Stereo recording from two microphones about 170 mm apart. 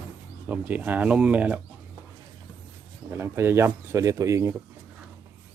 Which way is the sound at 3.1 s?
15° right (ahead or behind).